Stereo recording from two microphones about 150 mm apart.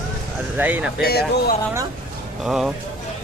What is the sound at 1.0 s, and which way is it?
Speech, 90° left.